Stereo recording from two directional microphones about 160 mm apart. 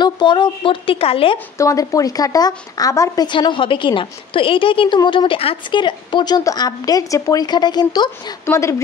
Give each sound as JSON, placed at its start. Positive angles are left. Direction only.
{"t": 0.0, "sound": "speech", "side_deg": 30}
{"t": 1.6, "sound": "a woman's voice", "side_deg": 20}